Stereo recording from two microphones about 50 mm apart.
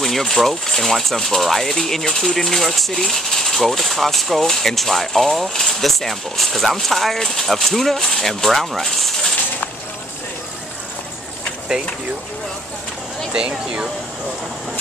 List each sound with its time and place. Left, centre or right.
0.0 s speech: centre
13.3 s speech: centre